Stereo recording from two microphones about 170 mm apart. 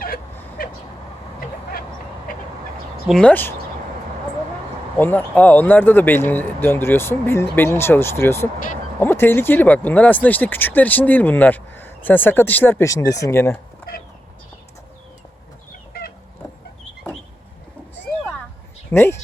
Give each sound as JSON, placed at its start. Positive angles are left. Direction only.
{"t": 0.6, "sound": "vehicle", "side_deg": 60}
{"t": 3.1, "sound": "speech", "side_deg": 5}
{"t": 4.9, "sound": "speech", "side_deg": 10}
{"t": 15.9, "sound": "chicken", "side_deg": 65}
{"t": 18.9, "sound": "speech", "side_deg": 15}